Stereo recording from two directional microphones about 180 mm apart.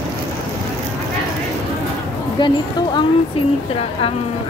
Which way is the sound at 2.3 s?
25° left (ahead or behind).